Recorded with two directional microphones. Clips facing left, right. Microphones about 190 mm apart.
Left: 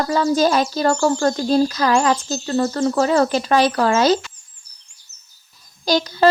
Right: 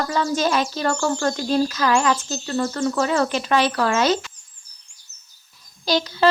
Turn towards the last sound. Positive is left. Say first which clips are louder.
# left 3 dB
turn(degrees=45)  # may be behind; listen again after turning